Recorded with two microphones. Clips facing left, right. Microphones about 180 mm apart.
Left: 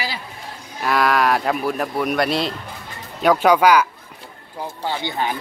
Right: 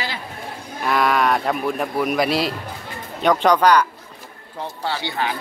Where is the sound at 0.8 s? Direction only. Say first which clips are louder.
Left 1 dB; centre (ahead or behind).